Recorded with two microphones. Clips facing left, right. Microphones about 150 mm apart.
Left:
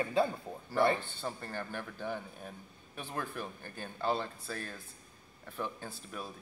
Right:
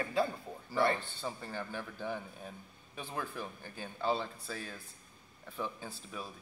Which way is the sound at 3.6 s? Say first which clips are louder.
Even; 10° right (ahead or behind).